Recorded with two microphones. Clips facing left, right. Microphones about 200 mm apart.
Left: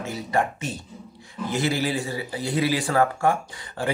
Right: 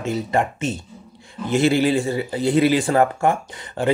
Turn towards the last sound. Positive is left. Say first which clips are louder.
# right 5 dB
turn(degrees=-20)  # may be behind; listen again after turning